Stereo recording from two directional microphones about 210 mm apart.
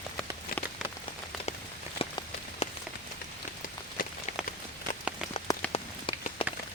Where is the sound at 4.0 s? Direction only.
40° left (ahead or behind).